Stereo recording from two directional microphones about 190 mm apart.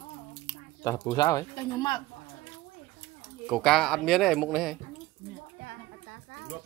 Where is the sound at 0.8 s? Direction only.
15° left (ahead or behind).